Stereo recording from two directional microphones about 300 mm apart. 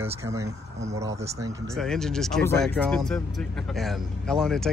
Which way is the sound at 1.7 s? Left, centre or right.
Centre.